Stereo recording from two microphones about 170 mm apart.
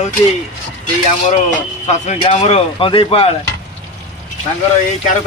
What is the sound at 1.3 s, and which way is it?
Speech, 45° left (ahead or behind).